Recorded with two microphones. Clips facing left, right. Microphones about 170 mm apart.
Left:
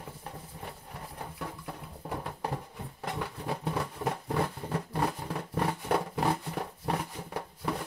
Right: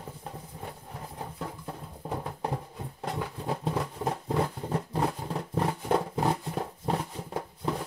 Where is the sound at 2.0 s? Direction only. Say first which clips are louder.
Right 2 dB; 25° right (ahead or behind).